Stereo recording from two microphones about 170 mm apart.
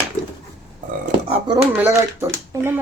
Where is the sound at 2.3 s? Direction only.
15° right (ahead or behind).